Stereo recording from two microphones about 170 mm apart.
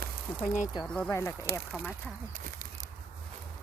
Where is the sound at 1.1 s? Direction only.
15° left (ahead or behind).